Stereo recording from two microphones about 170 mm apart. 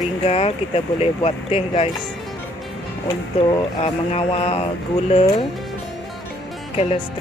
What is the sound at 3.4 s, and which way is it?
Speech, 35° left (ahead or behind).